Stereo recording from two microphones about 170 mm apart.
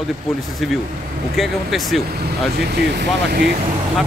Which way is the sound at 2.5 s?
75° right (ahead or behind).